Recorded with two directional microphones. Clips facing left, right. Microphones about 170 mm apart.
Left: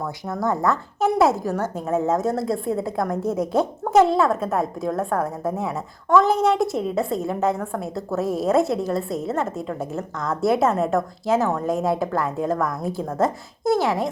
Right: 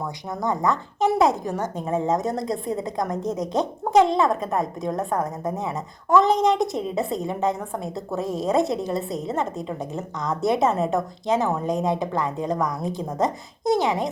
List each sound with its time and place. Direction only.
0.3 s speech: 15° right (ahead or behind)
0.7 s a woman's voice: 5° left (ahead or behind)